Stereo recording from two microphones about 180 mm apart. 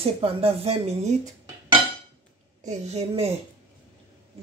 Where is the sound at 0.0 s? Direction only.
35° right (ahead or behind).